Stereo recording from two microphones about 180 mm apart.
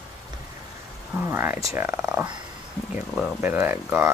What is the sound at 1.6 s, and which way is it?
Speech, 10° right (ahead or behind).